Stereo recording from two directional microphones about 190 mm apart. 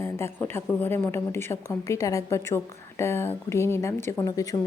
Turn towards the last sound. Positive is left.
turn(degrees=15)  # may be behind; listen again after turning